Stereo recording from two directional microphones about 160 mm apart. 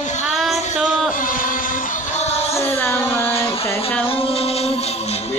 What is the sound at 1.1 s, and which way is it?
Vehicle, 60° left (ahead or behind).